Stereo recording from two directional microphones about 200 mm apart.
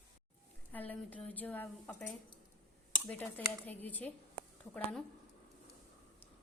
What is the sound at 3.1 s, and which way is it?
Speech, 10° left (ahead or behind).